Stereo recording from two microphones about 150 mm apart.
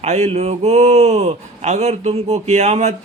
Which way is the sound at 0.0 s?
45° right (ahead or behind).